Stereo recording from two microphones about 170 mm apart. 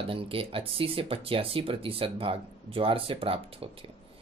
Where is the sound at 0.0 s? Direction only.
35° right (ahead or behind).